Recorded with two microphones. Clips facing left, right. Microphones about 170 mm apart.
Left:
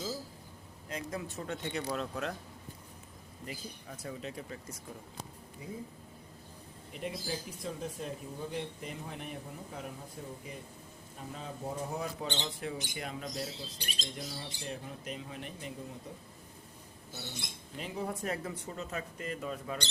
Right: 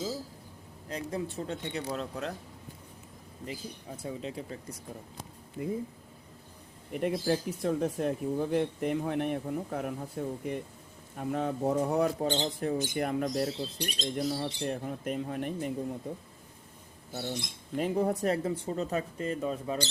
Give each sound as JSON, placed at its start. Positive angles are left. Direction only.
{"t": 0.9, "sound": "speech", "side_deg": -30}
{"t": 3.4, "sound": "speech", "side_deg": -25}
{"t": 5.6, "sound": "speech", "side_deg": -55}
{"t": 6.9, "sound": "speech", "side_deg": -60}
{"t": 12.2, "sound": "speech", "side_deg": -40}
{"t": 13.7, "sound": "speech", "side_deg": 0}
{"t": 14.2, "sound": "speech", "side_deg": -55}
{"t": 17.7, "sound": "speech", "side_deg": -50}